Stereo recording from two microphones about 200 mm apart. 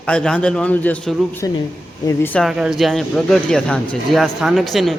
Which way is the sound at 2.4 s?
5° right (ahead or behind).